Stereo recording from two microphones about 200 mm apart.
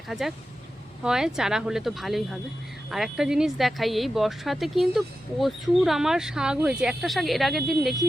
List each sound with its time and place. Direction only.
0.1 s speech: centre (ahead or behind)